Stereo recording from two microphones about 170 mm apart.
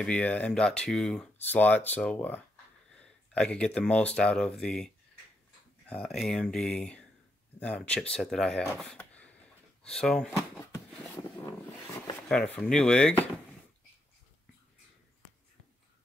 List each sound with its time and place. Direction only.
0.0 s speech: 5° left (ahead or behind)
8.7 s a sound: 5° left (ahead or behind)
9.8 s speech: 5° left (ahead or behind)
10.3 s speech: 20° left (ahead or behind)
12.5 s speech: 5° left (ahead or behind)